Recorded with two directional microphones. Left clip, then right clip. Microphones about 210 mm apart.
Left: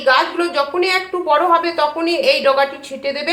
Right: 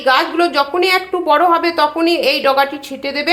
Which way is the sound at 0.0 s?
55° right (ahead or behind).